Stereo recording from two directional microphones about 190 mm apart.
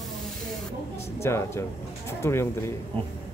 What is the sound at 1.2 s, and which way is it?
Speech, 15° left (ahead or behind).